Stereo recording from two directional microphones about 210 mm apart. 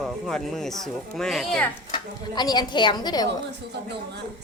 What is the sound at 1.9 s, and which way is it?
A woman's voice, 20° left (ahead or behind).